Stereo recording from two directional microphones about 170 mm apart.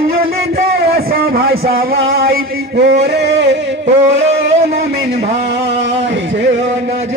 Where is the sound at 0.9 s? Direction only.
65° right (ahead or behind); by 3.6 s 90° right.